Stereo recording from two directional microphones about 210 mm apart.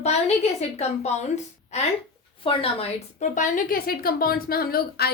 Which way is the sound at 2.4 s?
25° left (ahead or behind).